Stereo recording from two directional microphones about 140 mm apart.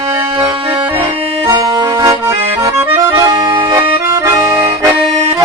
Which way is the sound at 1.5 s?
25° right (ahead or behind).